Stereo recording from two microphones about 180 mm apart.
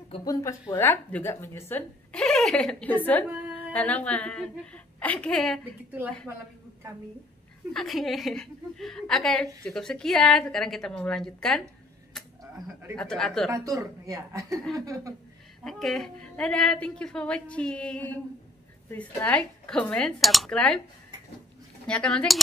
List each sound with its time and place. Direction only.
0.1 s a woman's voice: 20° left (ahead or behind); by 5.6 s 5° left (ahead or behind)
7.7 s a woman's voice: centre (ahead or behind)
12.9 s a woman's voice: 5° left (ahead or behind)
13.5 s speech: 20° right (ahead or behind)
15.6 s a woman's voice: centre (ahead or behind)
21.8 s a woman's voice: 5° left (ahead or behind)